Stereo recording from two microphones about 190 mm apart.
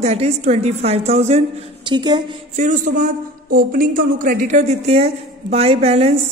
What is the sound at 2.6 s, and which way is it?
A man's voice, 40° right (ahead or behind).